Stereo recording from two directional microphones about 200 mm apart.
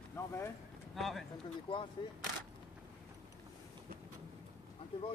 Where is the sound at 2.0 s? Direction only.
25° left (ahead or behind).